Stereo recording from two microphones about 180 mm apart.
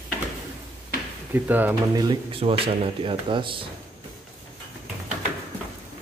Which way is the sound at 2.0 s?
30° right (ahead or behind).